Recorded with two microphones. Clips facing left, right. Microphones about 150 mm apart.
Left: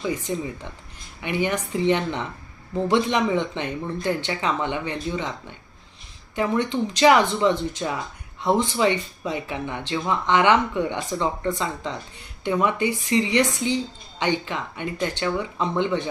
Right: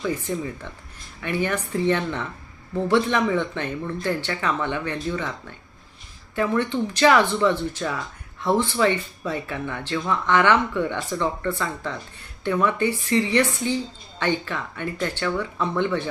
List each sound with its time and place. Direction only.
0.0 s speech: 15° left (ahead or behind)